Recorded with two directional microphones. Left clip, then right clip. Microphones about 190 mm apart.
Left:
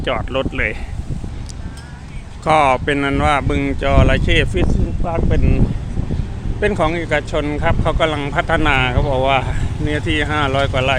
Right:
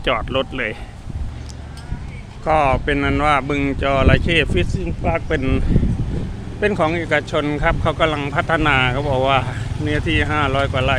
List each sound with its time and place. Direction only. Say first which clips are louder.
0.0 s speech: even; 10° right (ahead or behind)
2.4 s speech: left 3 dB; 20° left (ahead or behind); by 4.6 s centre (ahead or behind)
4.7 s speech: right 1 dB; 20° right (ahead or behind)
6.6 s speech: left 1 dB; centre (ahead or behind)